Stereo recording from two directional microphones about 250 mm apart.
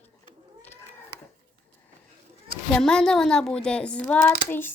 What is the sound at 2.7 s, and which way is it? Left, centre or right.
Speech, centre.